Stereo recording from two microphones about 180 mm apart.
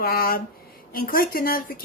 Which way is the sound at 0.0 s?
55° left (ahead or behind).